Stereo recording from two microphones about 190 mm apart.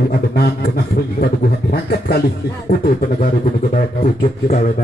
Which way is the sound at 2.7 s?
45° left (ahead or behind).